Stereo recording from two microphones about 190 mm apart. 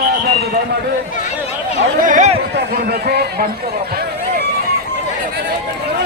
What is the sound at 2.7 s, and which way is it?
Speech, 55° right (ahead or behind).